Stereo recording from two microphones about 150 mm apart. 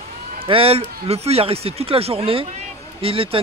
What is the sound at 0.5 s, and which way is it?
Speech, 40° right (ahead or behind).